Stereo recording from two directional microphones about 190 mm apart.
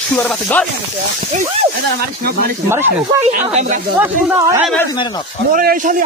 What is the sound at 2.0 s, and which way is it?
Speech, 55° right (ahead or behind).